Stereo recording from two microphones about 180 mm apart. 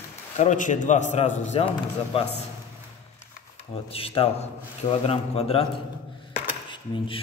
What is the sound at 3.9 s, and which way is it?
A man's voice, 30° left (ahead or behind).